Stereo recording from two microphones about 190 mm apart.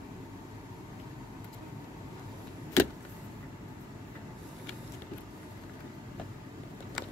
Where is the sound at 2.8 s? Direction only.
15° left (ahead or behind).